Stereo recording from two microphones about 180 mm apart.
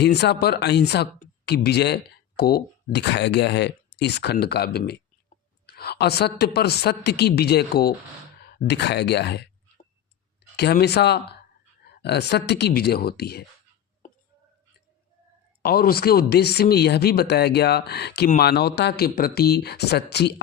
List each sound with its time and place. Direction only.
0.0 s speech: 65° left (ahead or behind)
8.4 s a sound: 65° left (ahead or behind)
10.6 s speech: 65° left (ahead or behind)
15.6 s speech: 60° left (ahead or behind)